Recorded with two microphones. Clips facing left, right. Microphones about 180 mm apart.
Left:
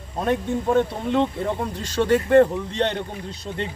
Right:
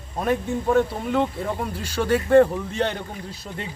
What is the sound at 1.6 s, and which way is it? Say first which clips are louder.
Speech: left 2 dB; 10° right (ahead or behind).